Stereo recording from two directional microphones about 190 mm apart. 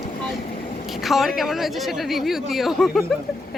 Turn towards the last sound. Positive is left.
turn(degrees=0)  # may be behind; listen again after turning